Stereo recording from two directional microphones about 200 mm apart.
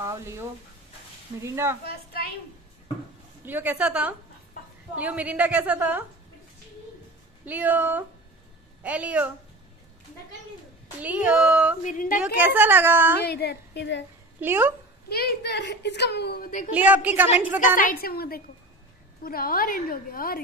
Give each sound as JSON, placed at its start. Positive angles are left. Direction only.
{"t": 0.0, "sound": "a sound", "side_deg": -15}
{"t": 1.4, "sound": "a woman's voice", "side_deg": -15}
{"t": 3.4, "sound": "a woman's voice", "side_deg": -10}
{"t": 7.4, "sound": "a woman's voice", "side_deg": -10}
{"t": 11.0, "sound": "a woman's voice", "side_deg": -5}
{"t": 11.8, "sound": "a woman's voice", "side_deg": 40}
{"t": 12.4, "sound": "a woman's voice", "side_deg": -10}
{"t": 13.2, "sound": "a woman's voice", "side_deg": 55}
{"t": 14.4, "sound": "a woman's voice", "side_deg": -10}
{"t": 15.0, "sound": "a woman's voice", "side_deg": 50}
{"t": 16.7, "sound": "a woman's voice", "side_deg": -10}
{"t": 17.6, "sound": "a woman's voice", "side_deg": 45}